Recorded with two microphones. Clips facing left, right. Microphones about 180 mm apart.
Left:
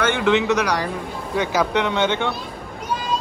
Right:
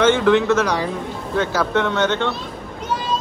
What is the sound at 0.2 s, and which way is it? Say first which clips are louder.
Speech: right 3 dB; 15° left (ahead or behind).